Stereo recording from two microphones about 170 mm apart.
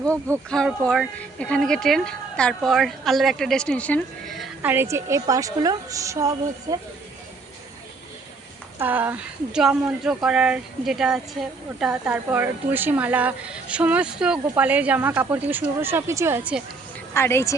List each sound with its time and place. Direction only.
0.5 s speech: 5° left (ahead or behind)
4.6 s a woman's voice: 10° right (ahead or behind)
8.8 s speech: 10° right (ahead or behind)
17.2 s a woman's voice: 15° left (ahead or behind)